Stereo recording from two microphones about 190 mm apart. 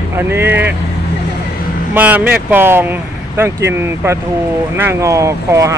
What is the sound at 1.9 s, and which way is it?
Speech, 10° right (ahead or behind).